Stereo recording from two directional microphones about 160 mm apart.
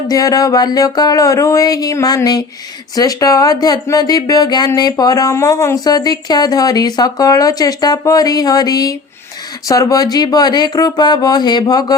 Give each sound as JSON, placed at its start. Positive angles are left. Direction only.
{"t": 0.1, "sound": "speech", "side_deg": 20}